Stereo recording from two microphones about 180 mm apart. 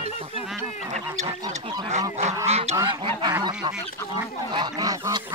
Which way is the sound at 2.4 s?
35° right (ahead or behind).